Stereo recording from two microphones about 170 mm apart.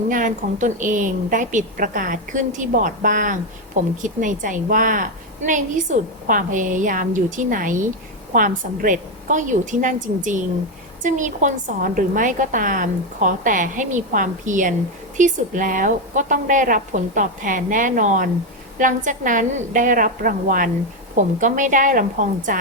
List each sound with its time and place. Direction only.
0.1 s a woman's voice: 50° right (ahead or behind)